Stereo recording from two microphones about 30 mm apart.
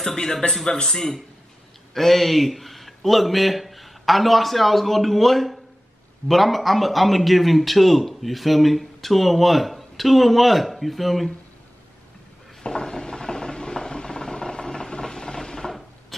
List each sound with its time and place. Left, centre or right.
0.0 s speech: centre
2.0 s a man's voice: centre
12.6 s mechanisms: left
16.1 s a sound: centre